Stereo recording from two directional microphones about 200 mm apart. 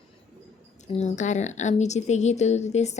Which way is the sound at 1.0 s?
35° left (ahead or behind).